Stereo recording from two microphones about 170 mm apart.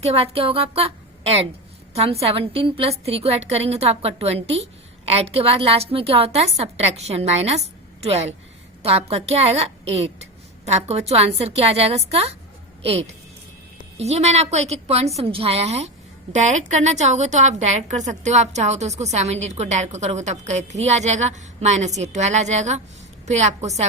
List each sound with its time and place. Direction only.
0.0 s a woman's voice: 35° right (ahead or behind)